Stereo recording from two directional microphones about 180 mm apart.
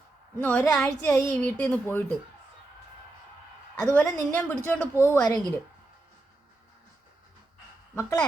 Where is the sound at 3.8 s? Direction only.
5° left (ahead or behind).